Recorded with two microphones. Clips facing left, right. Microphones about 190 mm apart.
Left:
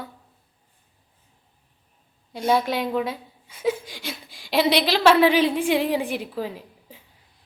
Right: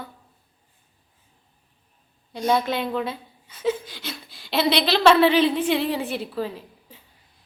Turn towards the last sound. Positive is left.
turn(degrees=15)  # may be behind; listen again after turning